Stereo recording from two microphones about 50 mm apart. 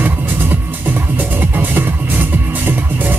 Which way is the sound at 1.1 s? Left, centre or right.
Right.